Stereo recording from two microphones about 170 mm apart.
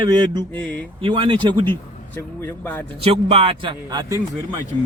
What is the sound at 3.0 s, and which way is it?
A man's voice, 35° right (ahead or behind).